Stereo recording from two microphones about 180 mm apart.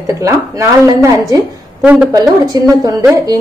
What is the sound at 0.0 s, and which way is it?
A woman's voice, 15° right (ahead or behind).